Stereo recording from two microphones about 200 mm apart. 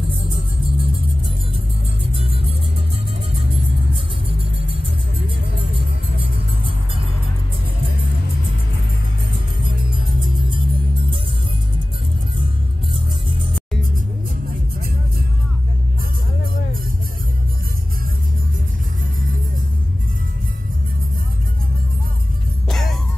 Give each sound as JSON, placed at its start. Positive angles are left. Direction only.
{"t": 0.0, "sound": "music", "side_deg": -25}
{"t": 2.1, "sound": "music", "side_deg": -25}
{"t": 10.5, "sound": "music", "side_deg": -25}
{"t": 22.7, "sound": "music", "side_deg": 0}